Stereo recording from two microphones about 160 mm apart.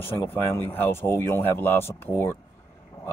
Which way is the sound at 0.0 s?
15° left (ahead or behind).